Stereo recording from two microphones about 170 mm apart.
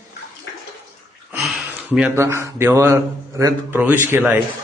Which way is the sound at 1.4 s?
Centre (ahead or behind).